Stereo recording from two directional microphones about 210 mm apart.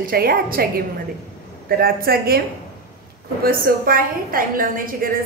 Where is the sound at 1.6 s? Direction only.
45° right (ahead or behind).